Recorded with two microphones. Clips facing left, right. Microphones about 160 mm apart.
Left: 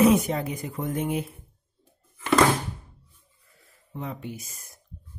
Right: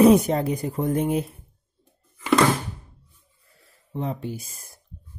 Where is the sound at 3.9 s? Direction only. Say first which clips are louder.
Right 5 dB; 30° right (ahead or behind).